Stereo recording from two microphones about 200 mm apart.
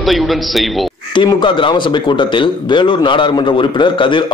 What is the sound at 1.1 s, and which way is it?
Speech, 25° left (ahead or behind).